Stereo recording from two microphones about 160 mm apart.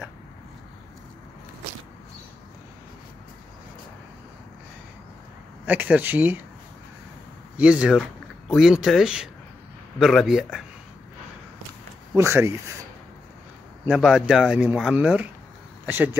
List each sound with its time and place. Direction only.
5.7 s speech: 10° right (ahead or behind)
7.5 s speech: 5° right (ahead or behind)
12.2 s speech: 15° right (ahead or behind)
13.8 s speech: 5° right (ahead or behind)